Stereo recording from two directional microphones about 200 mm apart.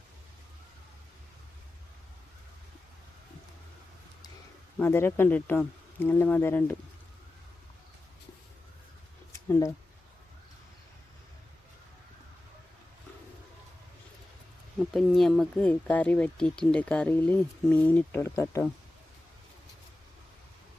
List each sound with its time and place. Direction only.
4.8 s speech: 10° left (ahead or behind)
9.5 s speech: 15° left (ahead or behind)
14.8 s speech: centre (ahead or behind)